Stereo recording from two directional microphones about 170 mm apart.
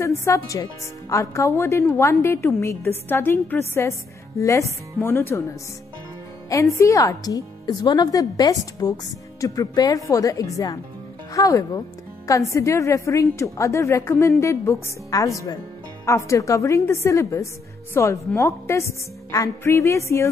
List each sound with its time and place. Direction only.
0.0 s a woman's voice: 15° left (ahead or behind)
6.5 s a woman's voice: 15° left (ahead or behind)